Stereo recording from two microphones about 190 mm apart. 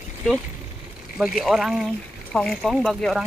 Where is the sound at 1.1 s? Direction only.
Centre (ahead or behind).